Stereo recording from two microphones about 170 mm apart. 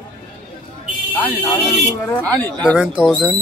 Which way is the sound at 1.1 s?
10° left (ahead or behind).